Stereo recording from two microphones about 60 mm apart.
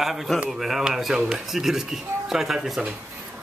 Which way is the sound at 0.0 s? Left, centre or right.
Centre.